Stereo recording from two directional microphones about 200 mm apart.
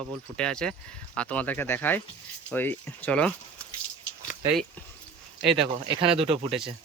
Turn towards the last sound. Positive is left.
turn(degrees=-30)  # may be behind; listen again after turning